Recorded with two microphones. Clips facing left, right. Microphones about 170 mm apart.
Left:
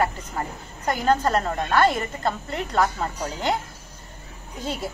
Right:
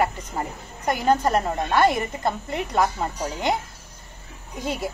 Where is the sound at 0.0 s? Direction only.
15° right (ahead or behind).